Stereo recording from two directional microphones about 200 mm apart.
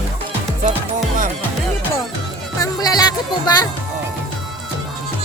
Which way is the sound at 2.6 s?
20° left (ahead or behind).